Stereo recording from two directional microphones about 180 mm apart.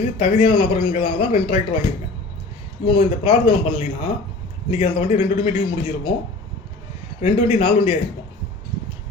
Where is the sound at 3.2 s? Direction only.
30° left (ahead or behind).